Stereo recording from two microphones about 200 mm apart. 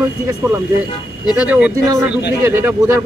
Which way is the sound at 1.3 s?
5° right (ahead or behind).